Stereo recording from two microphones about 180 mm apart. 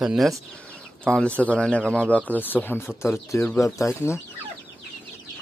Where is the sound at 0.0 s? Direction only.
5° right (ahead or behind); by 4.2 s 15° left (ahead or behind).